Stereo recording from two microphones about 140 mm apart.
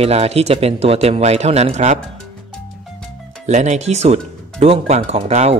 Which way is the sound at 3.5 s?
55° right (ahead or behind).